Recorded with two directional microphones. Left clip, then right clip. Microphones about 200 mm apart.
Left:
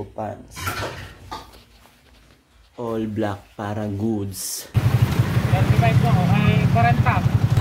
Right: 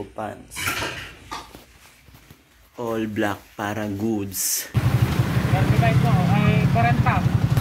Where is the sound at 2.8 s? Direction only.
5° left (ahead or behind).